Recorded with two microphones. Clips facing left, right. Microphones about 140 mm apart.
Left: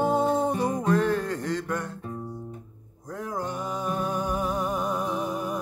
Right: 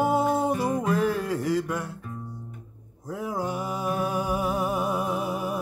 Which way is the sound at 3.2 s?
10° right (ahead or behind).